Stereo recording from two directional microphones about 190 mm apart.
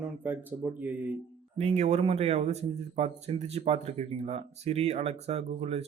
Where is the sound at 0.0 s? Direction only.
10° right (ahead or behind).